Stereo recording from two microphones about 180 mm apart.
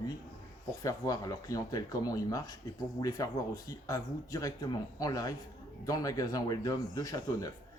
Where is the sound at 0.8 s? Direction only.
20° left (ahead or behind).